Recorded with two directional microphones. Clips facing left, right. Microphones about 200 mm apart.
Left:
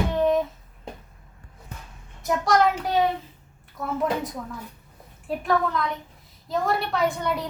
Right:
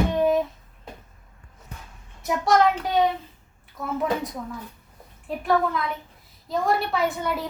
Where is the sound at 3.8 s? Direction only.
Centre (ahead or behind).